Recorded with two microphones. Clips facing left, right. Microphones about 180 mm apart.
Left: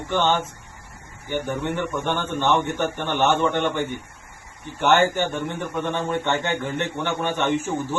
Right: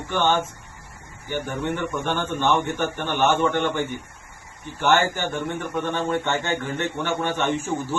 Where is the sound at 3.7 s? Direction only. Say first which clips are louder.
Even; 15° left (ahead or behind).